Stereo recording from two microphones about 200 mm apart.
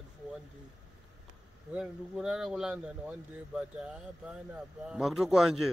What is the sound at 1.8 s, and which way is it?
Speech, centre (ahead or behind).